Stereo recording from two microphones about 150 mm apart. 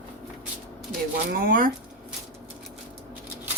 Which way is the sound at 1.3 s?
80° right.